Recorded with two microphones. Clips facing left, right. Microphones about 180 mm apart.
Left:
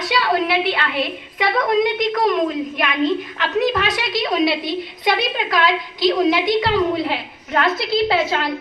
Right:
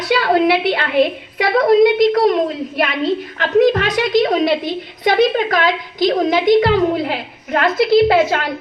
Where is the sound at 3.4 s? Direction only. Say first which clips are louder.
Right 8 dB; 45° right (ahead or behind).